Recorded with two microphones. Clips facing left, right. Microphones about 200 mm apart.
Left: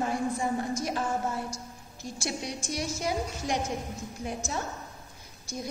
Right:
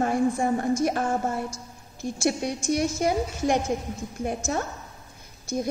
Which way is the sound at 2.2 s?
55° right (ahead or behind).